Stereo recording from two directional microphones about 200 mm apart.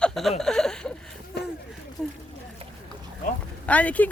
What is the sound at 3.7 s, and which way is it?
Speech, 5° left (ahead or behind).